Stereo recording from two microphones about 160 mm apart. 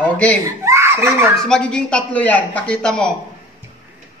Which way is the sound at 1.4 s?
5° left (ahead or behind).